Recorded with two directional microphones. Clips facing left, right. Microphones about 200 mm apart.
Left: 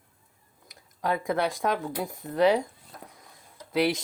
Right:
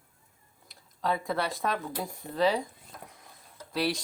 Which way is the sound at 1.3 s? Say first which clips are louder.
Left 4 dB; 15° left (ahead or behind).